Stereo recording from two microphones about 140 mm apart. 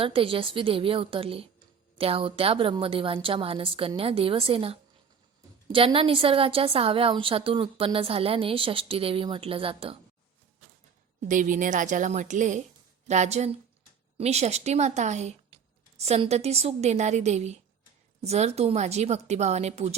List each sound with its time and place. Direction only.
0.0 s a woman's voice: 40° right (ahead or behind)
11.2 s a woman's voice: 65° right (ahead or behind); by 20.0 s 50° right (ahead or behind)